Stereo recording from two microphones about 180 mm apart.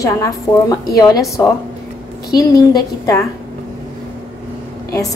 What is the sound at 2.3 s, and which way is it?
Speech, 20° left (ahead or behind).